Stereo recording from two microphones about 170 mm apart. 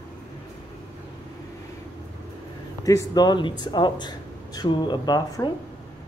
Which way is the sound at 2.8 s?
20° left (ahead or behind).